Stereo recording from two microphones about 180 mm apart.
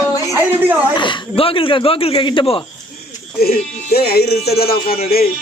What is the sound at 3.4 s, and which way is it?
Speech, 60° left (ahead or behind).